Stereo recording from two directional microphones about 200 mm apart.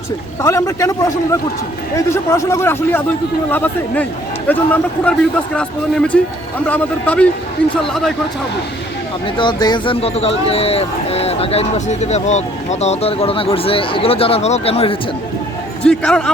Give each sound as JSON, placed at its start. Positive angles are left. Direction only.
{"t": 0.4, "sound": "a man's voice", "side_deg": 15}
{"t": 9.2, "sound": "speech", "side_deg": 25}
{"t": 15.9, "sound": "speech", "side_deg": 5}